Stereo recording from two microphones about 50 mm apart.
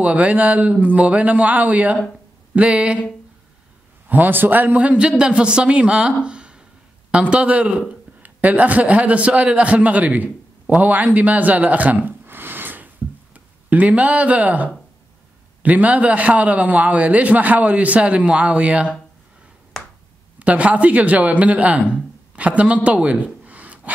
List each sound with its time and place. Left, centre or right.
0.0 s a man's voice: right
4.1 s speech: right
4.8 s a man's voice: right
19.7 s finger snapping: centre
20.3 s a man's voice: right
22.8 s a sound: right